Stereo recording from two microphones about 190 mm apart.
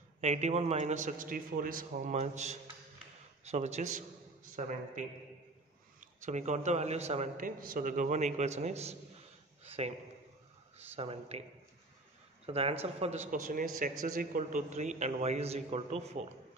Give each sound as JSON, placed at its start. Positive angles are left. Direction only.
{"t": 0.2, "sound": "a man's voice", "side_deg": -35}
{"t": 6.2, "sound": "a man's voice", "side_deg": -40}
{"t": 11.0, "sound": "a man's voice", "side_deg": -30}
{"t": 12.4, "sound": "a man's voice", "side_deg": -30}